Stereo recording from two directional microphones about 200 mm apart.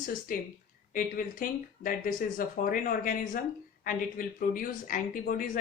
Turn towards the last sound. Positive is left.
turn(degrees=45)  # may be behind; listen again after turning